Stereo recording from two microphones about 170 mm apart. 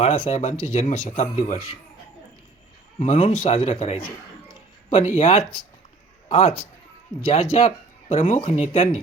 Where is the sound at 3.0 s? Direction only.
40° left (ahead or behind).